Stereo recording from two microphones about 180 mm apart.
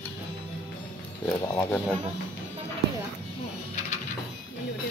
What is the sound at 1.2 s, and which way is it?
Speech, 15° left (ahead or behind).